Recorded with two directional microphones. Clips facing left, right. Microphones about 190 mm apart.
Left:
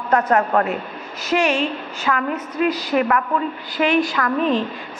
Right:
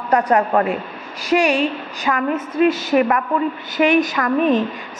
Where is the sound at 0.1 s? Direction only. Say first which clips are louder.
Right 1 dB; 15° right (ahead or behind).